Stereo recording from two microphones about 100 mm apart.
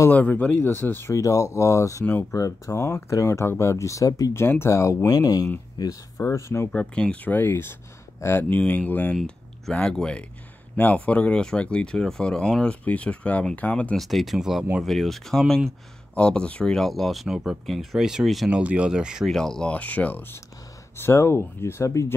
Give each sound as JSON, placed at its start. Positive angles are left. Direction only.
{"t": 0.1, "sound": "speech", "side_deg": 15}
{"t": 6.7, "sound": "speech", "side_deg": 10}
{"t": 13.9, "sound": "speech", "side_deg": 0}
{"t": 18.6, "sound": "speech", "side_deg": -15}
{"t": 19.3, "sound": "speech", "side_deg": 5}